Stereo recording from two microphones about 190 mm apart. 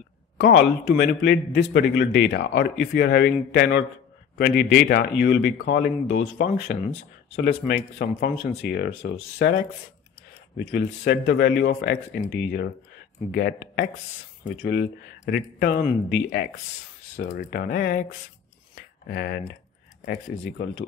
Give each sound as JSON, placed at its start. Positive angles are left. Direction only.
{"t": 0.5, "sound": "a man's voice", "side_deg": 65}
{"t": 6.0, "sound": "a man's voice", "side_deg": 65}
{"t": 7.4, "sound": "a man's voice", "side_deg": 45}
{"t": 10.6, "sound": "a man's voice", "side_deg": 55}
{"t": 17.2, "sound": "speech", "side_deg": 40}
{"t": 17.5, "sound": "a man's voice", "side_deg": 55}
{"t": 19.0, "sound": "a man's voice", "side_deg": 55}